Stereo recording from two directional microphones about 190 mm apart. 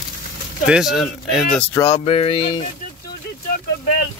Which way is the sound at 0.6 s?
5° right (ahead or behind).